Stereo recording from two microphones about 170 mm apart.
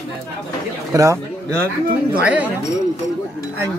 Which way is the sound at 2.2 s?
10° right (ahead or behind).